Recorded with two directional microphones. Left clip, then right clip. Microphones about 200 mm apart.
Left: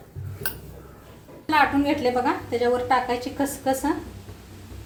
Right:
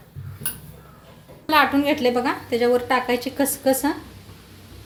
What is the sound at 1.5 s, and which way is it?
A woman's voice, 50° right (ahead or behind).